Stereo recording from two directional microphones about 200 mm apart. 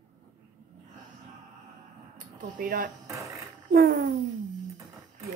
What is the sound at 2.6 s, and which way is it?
Speech, 45° right (ahead or behind).